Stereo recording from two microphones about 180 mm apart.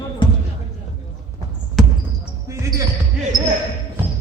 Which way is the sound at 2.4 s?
15° right (ahead or behind).